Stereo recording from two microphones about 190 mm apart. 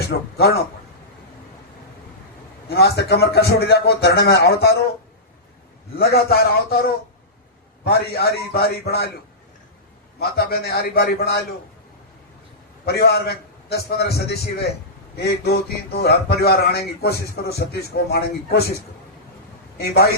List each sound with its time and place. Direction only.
0.1 s a man's voice: 55° left (ahead or behind)
2.6 s a man's voice: 55° left (ahead or behind)
6.0 s a man's voice: 55° left (ahead or behind)
10.2 s a man's voice: 55° left (ahead or behind)
12.8 s a man's voice: 55° left (ahead or behind)
19.8 s a man's voice: 55° left (ahead or behind)